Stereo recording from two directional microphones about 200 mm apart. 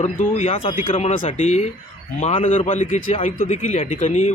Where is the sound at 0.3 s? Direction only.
35° left (ahead or behind).